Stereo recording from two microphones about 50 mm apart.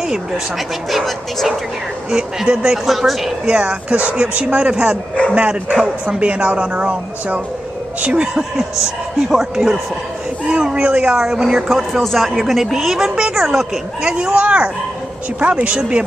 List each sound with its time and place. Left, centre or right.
0.8 s speech: centre
2.4 s speech: centre
2.7 s speech: centre
3.4 s speech: right
9.3 s speech: centre
10.5 s speech: right
11.6 s speech: centre; by 16.0 s right